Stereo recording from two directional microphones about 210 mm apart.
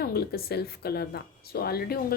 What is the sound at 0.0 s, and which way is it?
Speech, 50° left (ahead or behind).